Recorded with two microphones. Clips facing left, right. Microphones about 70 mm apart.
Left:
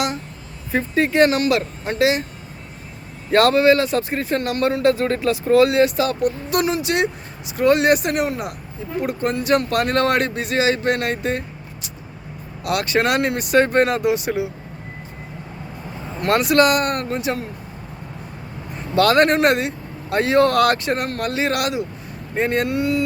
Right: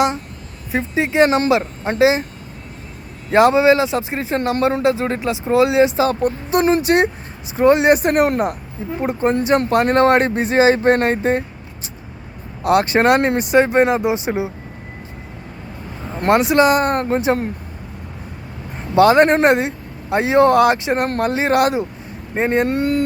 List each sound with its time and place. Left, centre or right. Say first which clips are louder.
0.7 s speech: even; centre
3.3 s speech: right 2 dB; centre
4.8 s speech: even; centre
8.1 s speech: right 6 dB; right
9.0 s speech: right 4 dB; right
12.6 s speech: right 6 dB; right
16.2 s speech: right 2 dB; right
18.9 s speech: right 4 dB; right
21.0 s speech: right 4 dB; right
22.7 s speech: right 2 dB; right